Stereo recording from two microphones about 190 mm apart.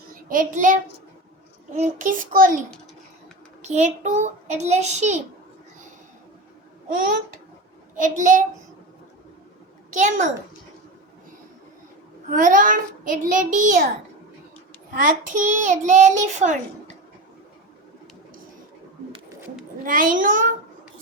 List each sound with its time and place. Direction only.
0.3 s a child's voice: 45° right (ahead or behind)
8.0 s a child's voice: 40° right (ahead or behind)
9.9 s a child's voice: 40° right (ahead or behind)
12.3 s a child's voice: 45° right (ahead or behind)
14.8 s a child's voice: 45° right (ahead or behind)
19.8 s a child's voice: 45° right (ahead or behind)